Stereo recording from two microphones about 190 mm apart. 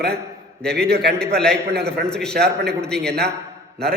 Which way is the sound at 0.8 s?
60° right (ahead or behind).